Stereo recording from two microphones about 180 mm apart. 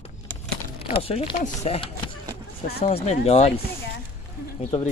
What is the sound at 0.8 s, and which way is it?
Speech, 35° left (ahead or behind).